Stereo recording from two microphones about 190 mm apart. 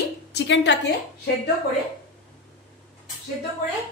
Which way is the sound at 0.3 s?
65° left (ahead or behind).